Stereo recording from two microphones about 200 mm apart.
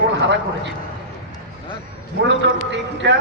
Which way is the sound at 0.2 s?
60° right (ahead or behind).